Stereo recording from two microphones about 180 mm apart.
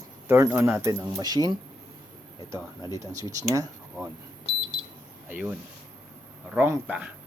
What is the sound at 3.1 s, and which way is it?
Speech, 20° right (ahead or behind).